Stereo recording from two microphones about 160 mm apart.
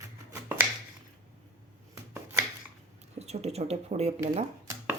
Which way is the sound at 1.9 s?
15° right (ahead or behind).